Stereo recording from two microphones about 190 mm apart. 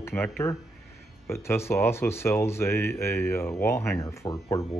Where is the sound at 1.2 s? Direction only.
15° left (ahead or behind).